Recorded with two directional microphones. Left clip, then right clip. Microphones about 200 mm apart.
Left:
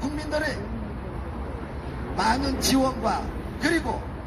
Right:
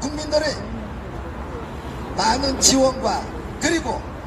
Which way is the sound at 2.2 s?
15° right (ahead or behind).